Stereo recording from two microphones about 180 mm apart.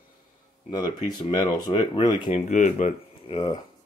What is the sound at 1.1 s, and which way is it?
Speech, 25° left (ahead or behind).